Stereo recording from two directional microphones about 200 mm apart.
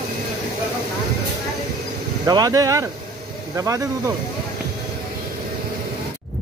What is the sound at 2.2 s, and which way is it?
Speech, 20° right (ahead or behind).